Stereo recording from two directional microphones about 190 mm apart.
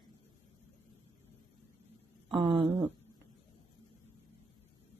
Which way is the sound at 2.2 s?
25° right (ahead or behind).